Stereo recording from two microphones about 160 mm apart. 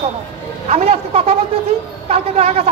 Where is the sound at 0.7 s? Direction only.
40° right (ahead or behind).